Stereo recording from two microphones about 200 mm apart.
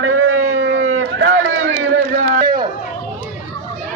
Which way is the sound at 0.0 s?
90° right.